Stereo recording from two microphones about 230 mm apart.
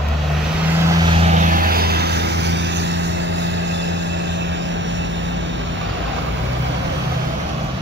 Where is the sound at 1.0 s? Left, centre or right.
Right.